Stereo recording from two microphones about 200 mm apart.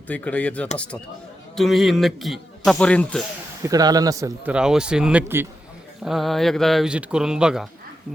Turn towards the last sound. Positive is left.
turn(degrees=-5)  # may be behind; listen again after turning